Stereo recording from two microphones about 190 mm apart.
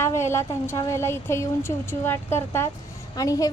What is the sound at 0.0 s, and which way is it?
A woman's voice, 15° left (ahead or behind).